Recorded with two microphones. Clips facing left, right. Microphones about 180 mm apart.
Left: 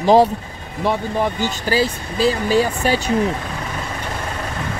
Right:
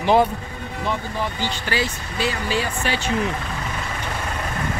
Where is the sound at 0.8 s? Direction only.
50° left (ahead or behind).